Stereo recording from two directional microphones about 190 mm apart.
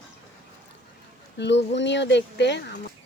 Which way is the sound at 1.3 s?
65° left (ahead or behind).